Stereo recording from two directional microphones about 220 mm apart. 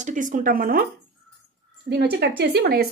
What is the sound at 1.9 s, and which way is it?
Speech, 50° right (ahead or behind).